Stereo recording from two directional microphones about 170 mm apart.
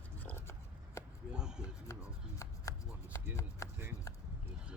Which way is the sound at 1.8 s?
20° left (ahead or behind).